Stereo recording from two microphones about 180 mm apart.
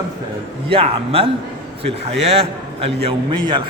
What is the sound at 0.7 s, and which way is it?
A man's voice, 30° right (ahead or behind).